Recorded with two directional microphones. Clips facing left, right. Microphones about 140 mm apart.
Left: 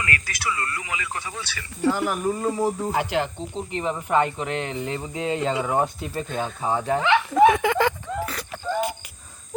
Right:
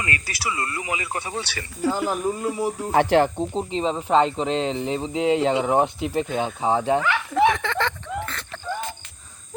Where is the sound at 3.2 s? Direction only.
40° right (ahead or behind).